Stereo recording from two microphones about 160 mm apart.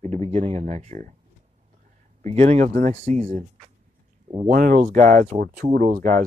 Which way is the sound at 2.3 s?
45° right (ahead or behind).